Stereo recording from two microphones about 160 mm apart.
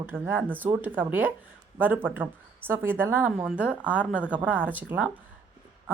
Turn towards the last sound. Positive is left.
turn(degrees=-10)  # may be behind; listen again after turning